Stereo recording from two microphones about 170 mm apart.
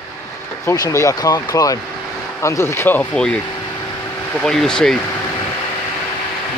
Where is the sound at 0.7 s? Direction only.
20° left (ahead or behind).